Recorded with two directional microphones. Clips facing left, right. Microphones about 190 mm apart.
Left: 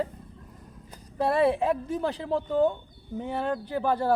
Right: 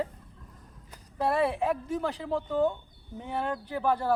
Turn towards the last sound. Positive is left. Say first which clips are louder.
# left 2 dB
turn(degrees=30)  # may be behind; listen again after turning